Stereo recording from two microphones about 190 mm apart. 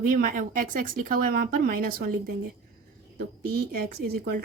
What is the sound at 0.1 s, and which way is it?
Speech, 45° right (ahead or behind).